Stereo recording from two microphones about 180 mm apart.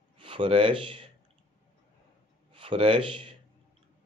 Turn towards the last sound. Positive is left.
turn(degrees=-30)  # may be behind; listen again after turning